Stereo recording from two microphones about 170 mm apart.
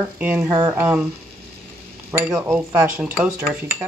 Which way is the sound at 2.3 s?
5° right (ahead or behind).